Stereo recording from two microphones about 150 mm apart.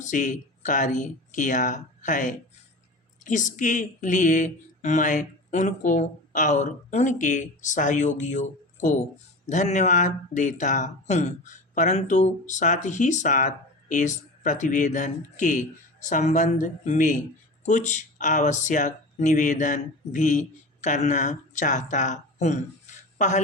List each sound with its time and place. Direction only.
0.0 s speech: 60° left (ahead or behind)